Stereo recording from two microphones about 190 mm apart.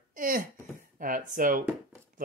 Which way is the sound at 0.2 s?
45° right (ahead or behind).